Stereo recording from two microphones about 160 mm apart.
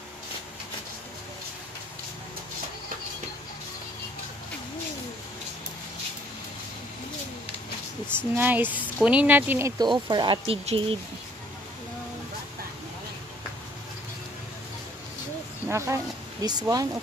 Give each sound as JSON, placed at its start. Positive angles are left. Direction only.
{"t": 8.2, "sound": "speech", "side_deg": -10}
{"t": 15.7, "sound": "speech", "side_deg": -20}